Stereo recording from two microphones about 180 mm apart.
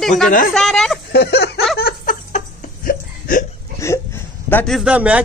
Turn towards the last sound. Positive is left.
turn(degrees=-10)  # may be behind; listen again after turning